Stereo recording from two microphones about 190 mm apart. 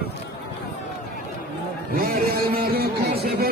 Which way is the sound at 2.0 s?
50° right (ahead or behind).